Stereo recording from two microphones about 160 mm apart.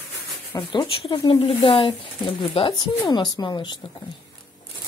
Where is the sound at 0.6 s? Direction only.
30° left (ahead or behind).